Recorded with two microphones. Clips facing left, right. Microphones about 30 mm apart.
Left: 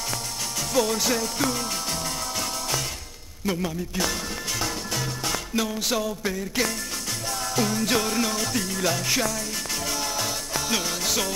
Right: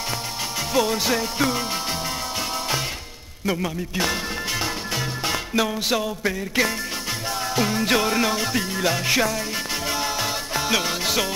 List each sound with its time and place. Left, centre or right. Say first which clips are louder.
0.7 s music: right 2 dB; right
3.4 s speech: right 2 dB; right
7.2 s music: right 2 dB; right